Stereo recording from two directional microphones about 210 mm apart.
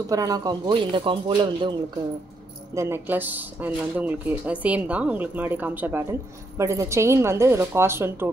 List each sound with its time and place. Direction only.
0.1 s a man's voice: 15° right (ahead or behind)